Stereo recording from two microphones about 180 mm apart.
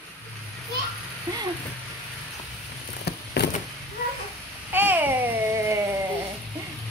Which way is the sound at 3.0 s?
65° left (ahead or behind).